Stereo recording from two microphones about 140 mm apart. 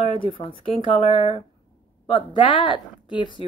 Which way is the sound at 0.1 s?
40° left (ahead or behind).